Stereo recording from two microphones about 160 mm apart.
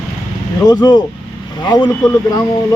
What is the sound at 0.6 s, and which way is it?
Speech, 25° left (ahead or behind).